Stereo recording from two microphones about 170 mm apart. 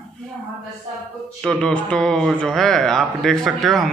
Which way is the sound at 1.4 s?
5° left (ahead or behind).